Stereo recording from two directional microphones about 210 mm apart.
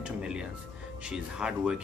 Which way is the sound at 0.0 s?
5° right (ahead or behind).